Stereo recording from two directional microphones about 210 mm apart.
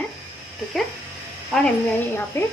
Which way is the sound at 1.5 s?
10° left (ahead or behind).